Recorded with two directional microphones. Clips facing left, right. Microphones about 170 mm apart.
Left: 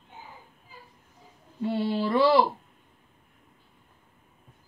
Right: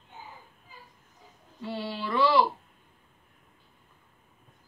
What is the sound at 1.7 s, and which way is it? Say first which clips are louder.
Music: left 7 dB; 50° left (ahead or behind).